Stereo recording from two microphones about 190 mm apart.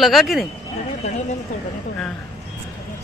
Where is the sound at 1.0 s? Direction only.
35° left (ahead or behind).